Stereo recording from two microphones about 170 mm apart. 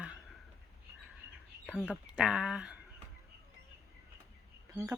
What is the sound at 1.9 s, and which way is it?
Speech, 5° right (ahead or behind).